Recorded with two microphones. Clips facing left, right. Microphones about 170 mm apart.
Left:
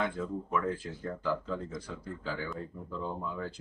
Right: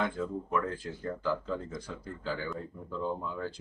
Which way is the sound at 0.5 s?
Centre (ahead or behind).